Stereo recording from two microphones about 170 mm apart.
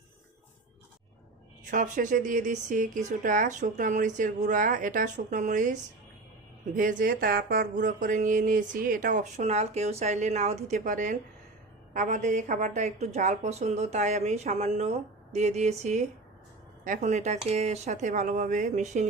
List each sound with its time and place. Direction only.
1.7 s speech: 50° right (ahead or behind)